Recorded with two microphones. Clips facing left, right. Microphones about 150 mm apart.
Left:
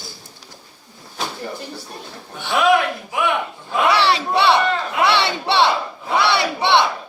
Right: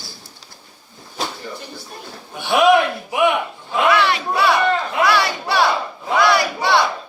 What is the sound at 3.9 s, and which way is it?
Speech, 30° left (ahead or behind).